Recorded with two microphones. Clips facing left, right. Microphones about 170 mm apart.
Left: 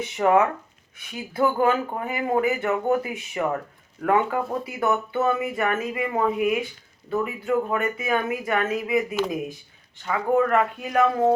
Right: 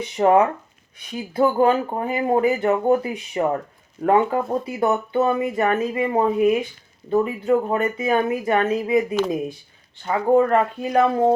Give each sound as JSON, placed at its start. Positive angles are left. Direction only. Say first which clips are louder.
{"t": 0.2, "sound": "speech", "louder": "right 3 dB", "side_deg": -30}